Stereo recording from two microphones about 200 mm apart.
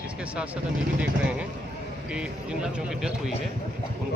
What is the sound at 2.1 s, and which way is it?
Speech, 5° right (ahead or behind).